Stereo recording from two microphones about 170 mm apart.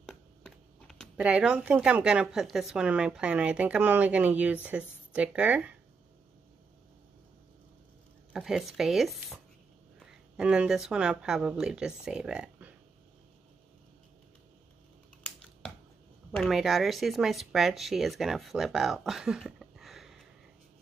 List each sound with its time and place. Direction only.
0.1 s speech: centre (ahead or behind)
8.3 s speech: 5° right (ahead or behind)
16.3 s speech: centre (ahead or behind)